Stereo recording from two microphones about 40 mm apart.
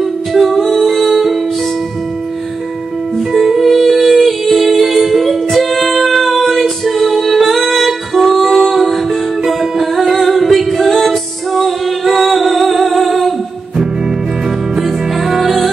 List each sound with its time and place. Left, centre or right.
0.3 s music: centre
3.3 s music: centre
14.8 s music: centre